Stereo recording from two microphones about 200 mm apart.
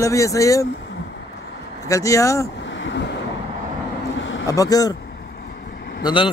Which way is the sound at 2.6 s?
65° left (ahead or behind).